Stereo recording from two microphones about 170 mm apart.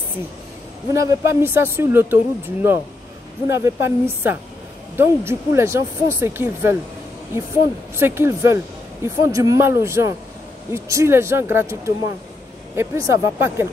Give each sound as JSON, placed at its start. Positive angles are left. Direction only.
{"t": 0.9, "sound": "speech", "side_deg": -15}
{"t": 7.9, "sound": "speech", "side_deg": -15}